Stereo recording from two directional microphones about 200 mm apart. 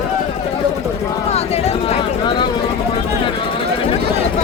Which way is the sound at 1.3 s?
30° left (ahead or behind).